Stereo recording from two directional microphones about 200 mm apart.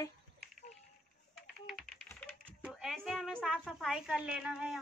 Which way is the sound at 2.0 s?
5° left (ahead or behind).